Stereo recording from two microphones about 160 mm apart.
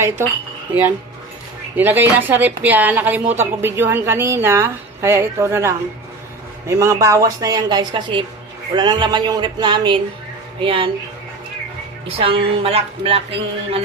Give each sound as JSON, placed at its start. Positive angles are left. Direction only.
{"t": 0.7, "sound": "a woman's voice", "side_deg": -10}
{"t": 12.0, "sound": "speech", "side_deg": -35}